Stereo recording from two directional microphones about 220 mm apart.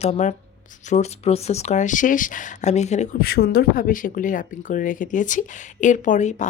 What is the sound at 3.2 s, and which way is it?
Speech, 45° left (ahead or behind).